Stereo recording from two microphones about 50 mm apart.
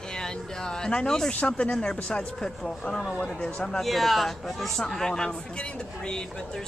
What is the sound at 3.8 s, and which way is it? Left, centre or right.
Speech, centre.